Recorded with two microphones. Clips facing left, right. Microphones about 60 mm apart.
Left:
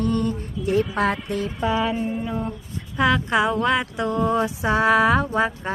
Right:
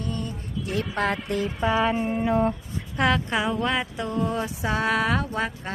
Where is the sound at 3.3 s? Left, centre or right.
Left.